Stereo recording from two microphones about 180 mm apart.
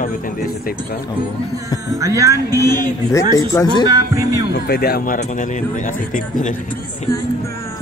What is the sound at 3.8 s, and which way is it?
Speech, 20° right (ahead or behind).